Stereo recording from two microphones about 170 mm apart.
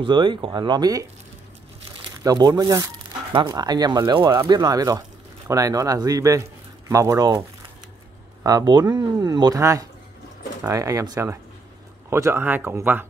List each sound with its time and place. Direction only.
0.0 s speech: 30° right (ahead or behind)
2.2 s speech: 25° right (ahead or behind)
8.5 s speech: 25° right (ahead or behind)